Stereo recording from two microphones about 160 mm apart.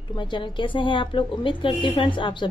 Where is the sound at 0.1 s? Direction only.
30° left (ahead or behind).